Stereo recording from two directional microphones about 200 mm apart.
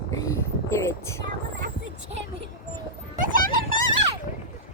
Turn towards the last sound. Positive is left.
turn(degrees=-45)  # may be behind; listen again after turning